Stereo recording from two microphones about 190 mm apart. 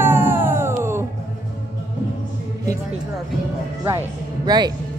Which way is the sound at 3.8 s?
20° right (ahead or behind).